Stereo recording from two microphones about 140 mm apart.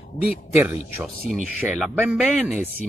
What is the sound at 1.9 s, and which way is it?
Speech, 10° right (ahead or behind).